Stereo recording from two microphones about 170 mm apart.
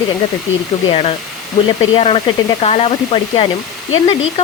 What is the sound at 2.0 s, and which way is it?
Speech, 35° left (ahead or behind).